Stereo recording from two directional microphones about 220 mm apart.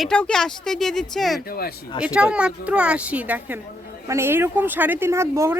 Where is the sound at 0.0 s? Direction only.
5° left (ahead or behind).